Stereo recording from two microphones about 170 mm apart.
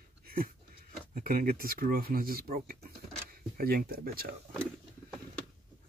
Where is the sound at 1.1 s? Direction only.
55° right (ahead or behind).